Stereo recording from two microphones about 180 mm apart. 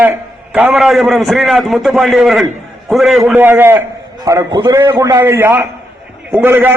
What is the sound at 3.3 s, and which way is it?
A man's voice, 10° right (ahead or behind).